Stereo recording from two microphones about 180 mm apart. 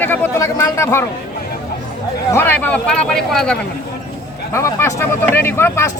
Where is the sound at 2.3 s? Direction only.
10° left (ahead or behind).